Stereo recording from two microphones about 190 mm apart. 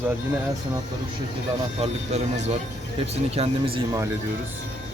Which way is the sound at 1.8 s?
35° right (ahead or behind).